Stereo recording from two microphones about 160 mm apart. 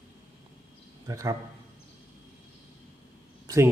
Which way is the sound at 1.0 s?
20° right (ahead or behind).